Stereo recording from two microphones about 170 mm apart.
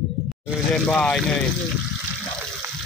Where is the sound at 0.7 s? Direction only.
5° left (ahead or behind).